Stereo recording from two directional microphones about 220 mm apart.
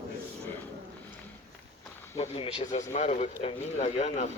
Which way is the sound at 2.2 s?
25° left (ahead or behind).